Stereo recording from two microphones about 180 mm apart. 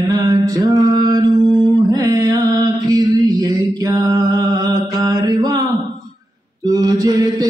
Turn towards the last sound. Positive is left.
turn(degrees=-20)  # may be behind; listen again after turning